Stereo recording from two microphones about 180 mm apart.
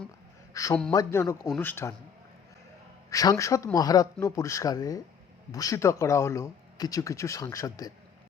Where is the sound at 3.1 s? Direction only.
20° left (ahead or behind).